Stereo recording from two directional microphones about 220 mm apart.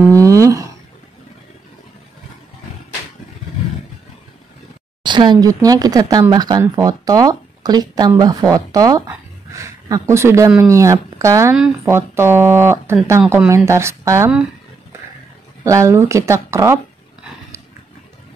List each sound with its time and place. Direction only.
0.1 s a sound: 15° right (ahead or behind)
5.0 s speech: 20° right (ahead or behind)
15.6 s speech: 15° right (ahead or behind)